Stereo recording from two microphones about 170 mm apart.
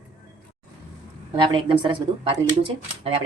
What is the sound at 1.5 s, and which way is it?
Speech, 30° right (ahead or behind).